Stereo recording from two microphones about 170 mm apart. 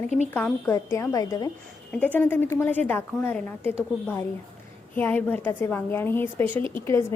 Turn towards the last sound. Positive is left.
turn(degrees=15)  # may be behind; listen again after turning